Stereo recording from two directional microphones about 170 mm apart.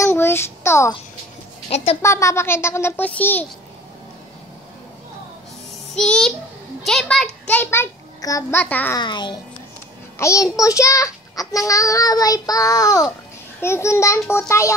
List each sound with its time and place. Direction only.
0.0 s child singing: 15° left (ahead or behind)
2.0 s speech: 15° left (ahead or behind)
5.9 s a child's voice: 5° left (ahead or behind)
8.9 s a child's voice: 25° left (ahead or behind)